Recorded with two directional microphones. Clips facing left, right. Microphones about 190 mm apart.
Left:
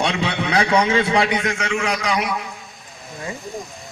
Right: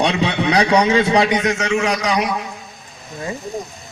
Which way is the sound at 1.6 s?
35° right (ahead or behind).